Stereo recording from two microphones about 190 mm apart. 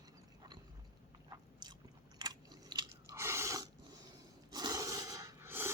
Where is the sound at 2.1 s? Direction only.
20° right (ahead or behind).